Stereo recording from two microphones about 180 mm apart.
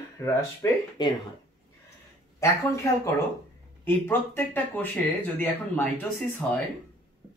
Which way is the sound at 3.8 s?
10° left (ahead or behind).